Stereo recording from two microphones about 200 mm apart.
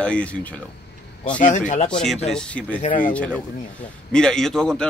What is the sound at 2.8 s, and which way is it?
Speech, 35° left (ahead or behind).